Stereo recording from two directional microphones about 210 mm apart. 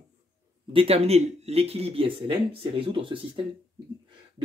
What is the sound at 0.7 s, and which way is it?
Speech, 30° right (ahead or behind).